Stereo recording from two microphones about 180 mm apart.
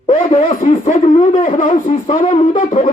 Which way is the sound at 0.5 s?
45° left (ahead or behind).